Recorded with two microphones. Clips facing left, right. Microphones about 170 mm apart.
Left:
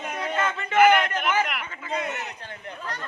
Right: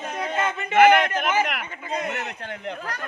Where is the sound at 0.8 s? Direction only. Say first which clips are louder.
Right 2 dB; 40° right (ahead or behind).